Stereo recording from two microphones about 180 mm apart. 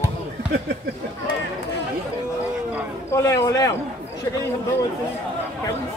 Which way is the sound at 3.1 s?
15° left (ahead or behind).